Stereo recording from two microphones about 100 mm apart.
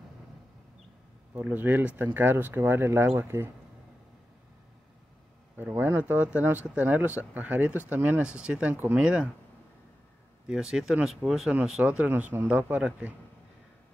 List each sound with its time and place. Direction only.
1.3 s speech: 15° right (ahead or behind)
5.6 s speech: 20° right (ahead or behind)
10.4 s speech: 5° right (ahead or behind)